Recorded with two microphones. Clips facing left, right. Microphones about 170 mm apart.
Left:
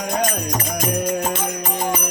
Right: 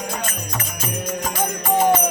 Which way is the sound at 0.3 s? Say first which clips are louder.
Left 6 dB; 40° left (ahead or behind).